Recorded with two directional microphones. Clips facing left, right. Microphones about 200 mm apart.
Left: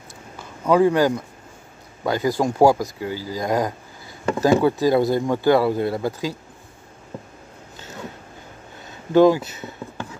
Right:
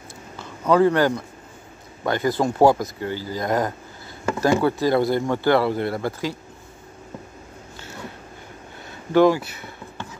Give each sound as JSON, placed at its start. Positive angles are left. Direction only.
{"t": 0.7, "sound": "speech", "side_deg": 15}
{"t": 9.1, "sound": "speech", "side_deg": 15}